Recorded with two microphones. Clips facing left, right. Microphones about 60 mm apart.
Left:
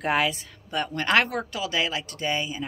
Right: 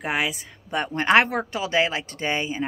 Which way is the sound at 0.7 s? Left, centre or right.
Right.